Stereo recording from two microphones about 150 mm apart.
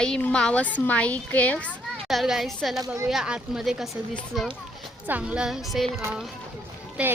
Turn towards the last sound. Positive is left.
turn(degrees=-5)  # may be behind; listen again after turning